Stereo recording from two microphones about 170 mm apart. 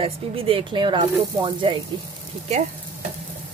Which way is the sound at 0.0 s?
30° right (ahead or behind).